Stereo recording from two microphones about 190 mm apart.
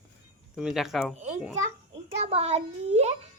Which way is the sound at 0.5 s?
Centre (ahead or behind).